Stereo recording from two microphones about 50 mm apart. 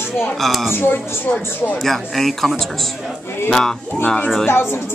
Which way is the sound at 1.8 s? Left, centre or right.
Centre.